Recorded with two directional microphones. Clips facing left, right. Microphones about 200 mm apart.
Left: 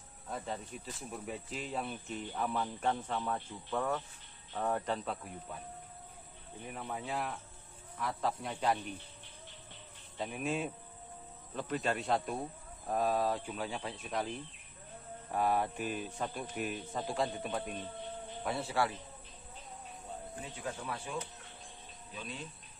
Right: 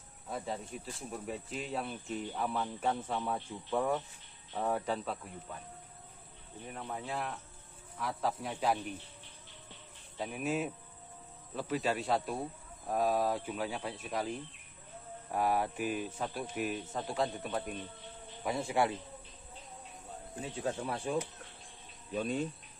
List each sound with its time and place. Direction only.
0.3 s speech: centre (ahead or behind)
6.7 s speech: 5° left (ahead or behind)
10.1 s speech: 5° right (ahead or behind)
15.3 s speech: 5° right (ahead or behind)
18.4 s speech: 10° right (ahead or behind)
20.5 s speech: 30° right (ahead or behind)
22.1 s speech: 50° right (ahead or behind)